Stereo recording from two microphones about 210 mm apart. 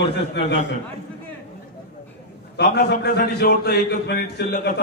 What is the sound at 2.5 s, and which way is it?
A man's voice, 50° left (ahead or behind).